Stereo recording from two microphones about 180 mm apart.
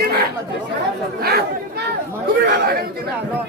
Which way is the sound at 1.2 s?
60° right (ahead or behind).